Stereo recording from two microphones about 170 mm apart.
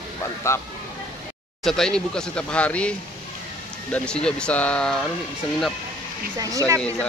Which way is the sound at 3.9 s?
5° left (ahead or behind).